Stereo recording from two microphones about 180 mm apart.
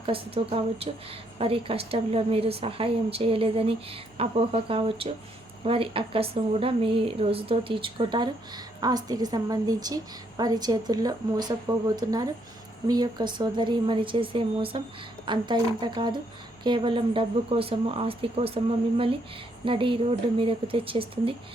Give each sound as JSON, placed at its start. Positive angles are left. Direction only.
{"t": 0.0, "sound": "speech", "side_deg": -30}